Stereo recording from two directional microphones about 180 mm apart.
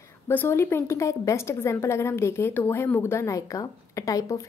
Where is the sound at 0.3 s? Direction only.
10° left (ahead or behind).